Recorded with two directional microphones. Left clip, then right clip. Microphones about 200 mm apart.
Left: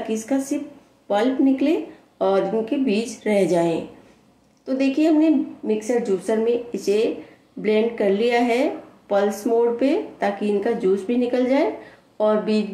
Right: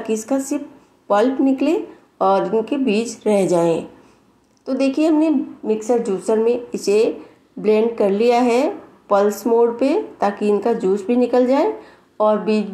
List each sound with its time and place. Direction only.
0.0 s a woman's voice: 20° right (ahead or behind)